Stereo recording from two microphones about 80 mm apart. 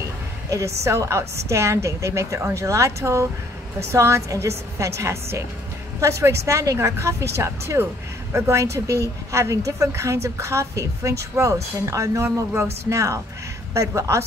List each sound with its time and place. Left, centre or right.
0.5 s a woman's voice: right